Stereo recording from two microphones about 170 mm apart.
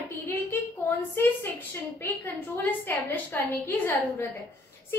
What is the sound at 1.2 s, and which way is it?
Speech, 10° left (ahead or behind).